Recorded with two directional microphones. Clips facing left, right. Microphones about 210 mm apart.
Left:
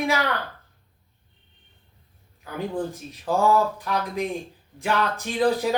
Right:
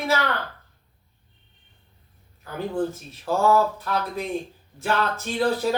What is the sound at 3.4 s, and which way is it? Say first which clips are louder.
Speech: right 1 dB; 15° left (ahead or behind).